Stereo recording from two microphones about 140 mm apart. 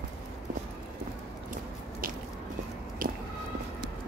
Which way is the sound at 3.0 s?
80° right.